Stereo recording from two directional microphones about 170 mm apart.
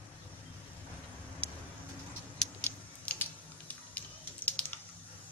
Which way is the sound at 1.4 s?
10° left (ahead or behind).